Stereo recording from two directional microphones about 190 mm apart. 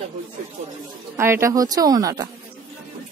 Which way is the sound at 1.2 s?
15° right (ahead or behind).